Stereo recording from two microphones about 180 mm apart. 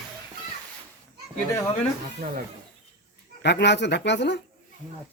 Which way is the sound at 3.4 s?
70° left (ahead or behind).